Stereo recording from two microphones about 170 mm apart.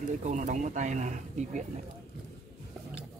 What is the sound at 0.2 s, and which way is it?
Speech, 45° right (ahead or behind).